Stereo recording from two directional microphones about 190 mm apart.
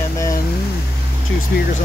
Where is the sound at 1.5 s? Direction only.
55° left (ahead or behind).